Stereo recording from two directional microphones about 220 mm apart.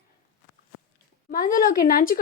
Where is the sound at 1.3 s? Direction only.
40° left (ahead or behind).